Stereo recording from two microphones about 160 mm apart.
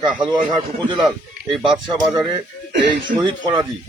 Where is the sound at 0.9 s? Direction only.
Centre (ahead or behind).